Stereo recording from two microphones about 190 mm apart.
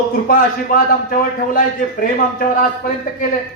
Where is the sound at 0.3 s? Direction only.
50° left (ahead or behind).